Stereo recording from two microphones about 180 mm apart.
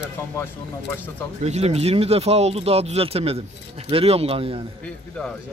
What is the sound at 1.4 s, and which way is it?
Speech, 35° right (ahead or behind).